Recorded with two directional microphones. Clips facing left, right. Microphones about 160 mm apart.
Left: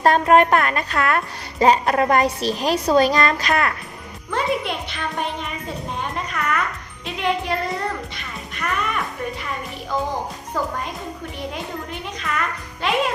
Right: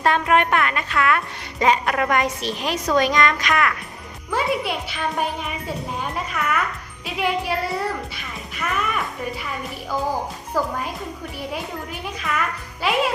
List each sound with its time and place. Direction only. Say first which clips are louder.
0.0 s a woman's voice: left 4 dB; 40° left (ahead or behind)
4.3 s a child's voice: even; 5° right (ahead or behind)
7.0 s music: even; 5° right (ahead or behind)
12.8 s music: even; 5° right (ahead or behind)